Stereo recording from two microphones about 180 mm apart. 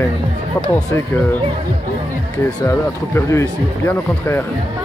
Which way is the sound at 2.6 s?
15° left (ahead or behind).